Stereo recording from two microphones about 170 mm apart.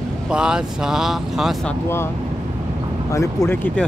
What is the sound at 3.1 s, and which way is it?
Speech, 20° left (ahead or behind).